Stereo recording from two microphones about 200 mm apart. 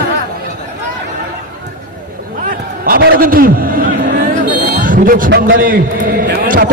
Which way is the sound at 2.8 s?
45° right (ahead or behind).